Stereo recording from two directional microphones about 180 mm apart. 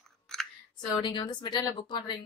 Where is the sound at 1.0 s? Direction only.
25° left (ahead or behind).